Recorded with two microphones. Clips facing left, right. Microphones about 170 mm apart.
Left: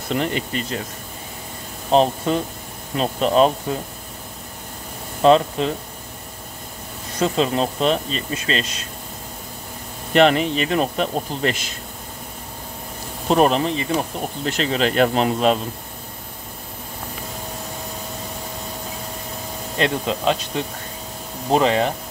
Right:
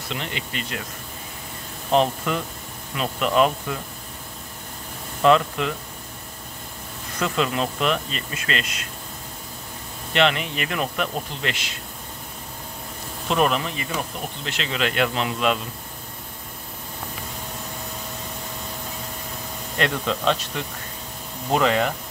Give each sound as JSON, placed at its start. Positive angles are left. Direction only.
{"t": 0.1, "sound": "speech", "side_deg": 45}
{"t": 1.9, "sound": "speech", "side_deg": 30}
{"t": 5.2, "sound": "speech", "side_deg": 30}
{"t": 7.2, "sound": "speech", "side_deg": 30}
{"t": 10.1, "sound": "speech", "side_deg": 40}
{"t": 13.3, "sound": "speech", "side_deg": 35}
{"t": 19.8, "sound": "speech", "side_deg": 25}